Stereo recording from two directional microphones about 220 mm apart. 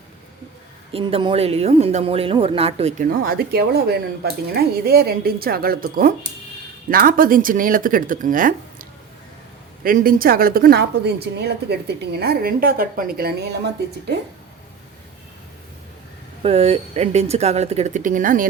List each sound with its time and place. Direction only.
0.9 s speech: 25° right (ahead or behind)
3.0 s a woman's voice: 45° right (ahead or behind)
16.4 s speech: 25° right (ahead or behind)